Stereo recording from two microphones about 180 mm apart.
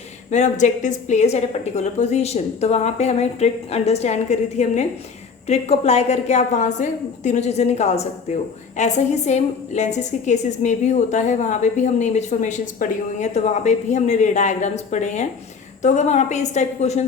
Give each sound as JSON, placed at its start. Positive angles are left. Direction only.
{"t": 0.3, "sound": "a woman's voice", "side_deg": 40}